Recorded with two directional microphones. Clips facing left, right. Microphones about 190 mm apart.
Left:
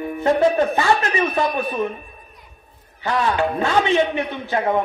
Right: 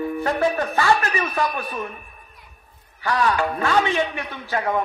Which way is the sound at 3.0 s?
25° left (ahead or behind).